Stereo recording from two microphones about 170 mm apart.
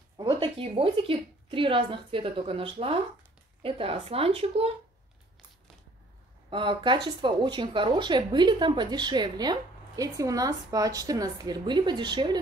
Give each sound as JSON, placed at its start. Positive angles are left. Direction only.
{"t": 0.2, "sound": "a woman's voice", "side_deg": -30}
{"t": 6.5, "sound": "a woman's voice", "side_deg": -30}